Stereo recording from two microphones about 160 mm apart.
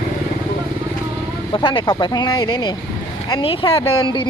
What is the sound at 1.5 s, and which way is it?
Speech, 30° left (ahead or behind).